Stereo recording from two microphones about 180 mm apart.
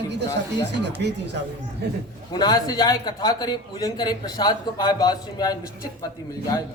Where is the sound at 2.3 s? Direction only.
20° left (ahead or behind).